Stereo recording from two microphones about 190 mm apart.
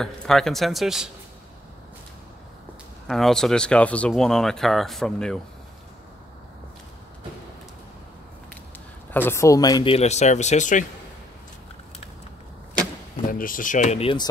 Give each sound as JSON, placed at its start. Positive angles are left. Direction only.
{"t": 0.0, "sound": "speech", "side_deg": 0}
{"t": 3.1, "sound": "speech", "side_deg": 0}
{"t": 9.1, "sound": "speech", "side_deg": 10}
{"t": 9.9, "sound": "speech", "side_deg": 35}
{"t": 13.3, "sound": "speech", "side_deg": 45}